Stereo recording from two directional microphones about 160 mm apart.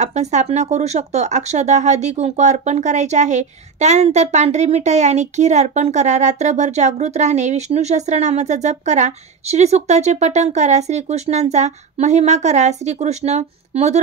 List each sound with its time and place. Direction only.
0.0 s speech: 45° right (ahead or behind)